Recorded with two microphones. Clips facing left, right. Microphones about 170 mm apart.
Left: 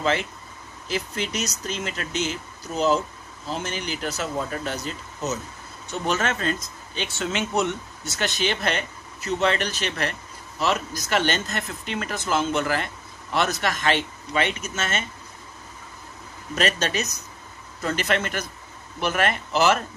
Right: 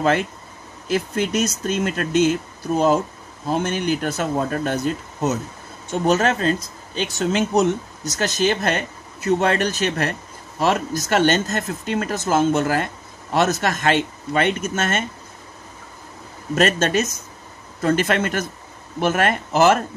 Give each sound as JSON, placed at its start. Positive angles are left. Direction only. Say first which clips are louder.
{"t": 0.0, "sound": "speech", "louder": "right 5 dB", "side_deg": -50}
{"t": 16.5, "sound": "speech", "louder": "right 6 dB", "side_deg": -50}